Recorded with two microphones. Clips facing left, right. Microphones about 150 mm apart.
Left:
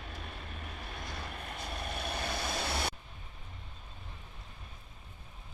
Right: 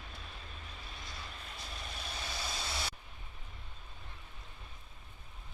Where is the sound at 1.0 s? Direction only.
60° left (ahead or behind).